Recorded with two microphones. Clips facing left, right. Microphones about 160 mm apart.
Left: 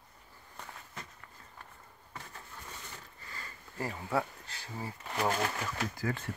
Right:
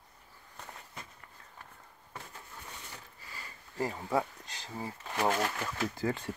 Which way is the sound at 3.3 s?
15° right (ahead or behind).